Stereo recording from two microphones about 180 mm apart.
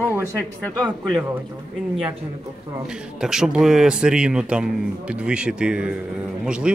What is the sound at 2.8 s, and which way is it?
Speech, 5° right (ahead or behind).